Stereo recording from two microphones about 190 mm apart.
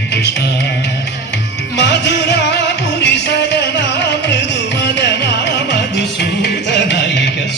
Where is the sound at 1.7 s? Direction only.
65° left (ahead or behind).